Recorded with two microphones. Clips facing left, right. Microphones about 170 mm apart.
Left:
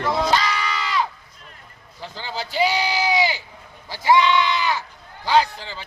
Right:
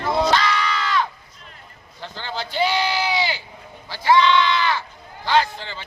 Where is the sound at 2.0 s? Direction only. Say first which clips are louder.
Even; 5° left (ahead or behind).